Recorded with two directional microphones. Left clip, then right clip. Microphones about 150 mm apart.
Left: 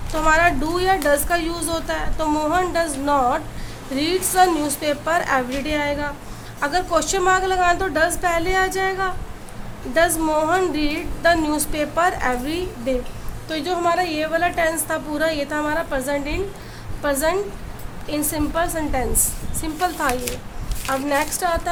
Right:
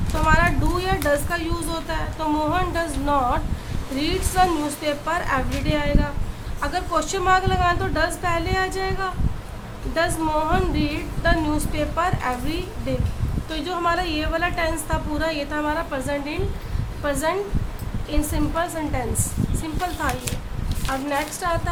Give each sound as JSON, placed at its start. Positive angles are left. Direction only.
{"t": 0.3, "sound": "a woman's voice", "side_deg": 25}
{"t": 13.5, "sound": "a woman's voice", "side_deg": 20}